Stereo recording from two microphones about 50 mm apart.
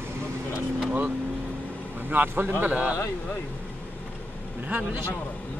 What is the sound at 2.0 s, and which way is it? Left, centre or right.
Speech, right.